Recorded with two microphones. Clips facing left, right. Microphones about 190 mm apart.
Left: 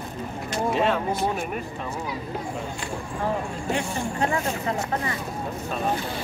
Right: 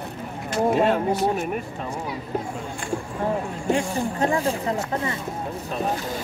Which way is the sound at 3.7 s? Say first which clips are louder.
Right 2 dB; 30° right (ahead or behind).